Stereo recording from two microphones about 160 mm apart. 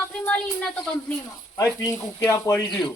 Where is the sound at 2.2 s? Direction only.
20° left (ahead or behind).